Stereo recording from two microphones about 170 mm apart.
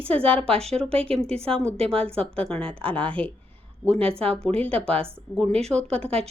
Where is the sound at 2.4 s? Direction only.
5° left (ahead or behind).